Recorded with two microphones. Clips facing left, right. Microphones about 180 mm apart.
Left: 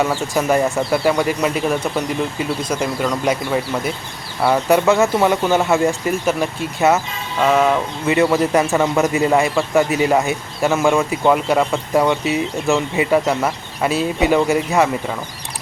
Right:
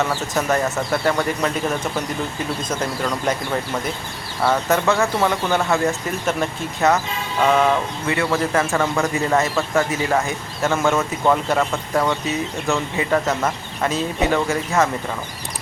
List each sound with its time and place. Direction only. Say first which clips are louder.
0.0 s a man's voice: left 3 dB; 10° left (ahead or behind)
4.4 s a man's voice: left 4 dB; 15° left (ahead or behind)
7.4 s music: left 2 dB; 5° left (ahead or behind)
8.0 s a man's voice: left 8 dB; 20° left (ahead or behind)